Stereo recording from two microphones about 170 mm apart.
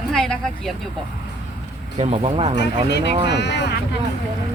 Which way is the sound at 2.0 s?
35° right (ahead or behind).